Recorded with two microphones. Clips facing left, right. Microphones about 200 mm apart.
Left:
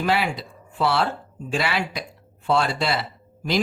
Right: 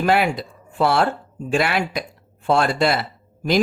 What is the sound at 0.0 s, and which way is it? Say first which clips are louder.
A woman's voice: right 4 dB; 50° right (ahead or behind).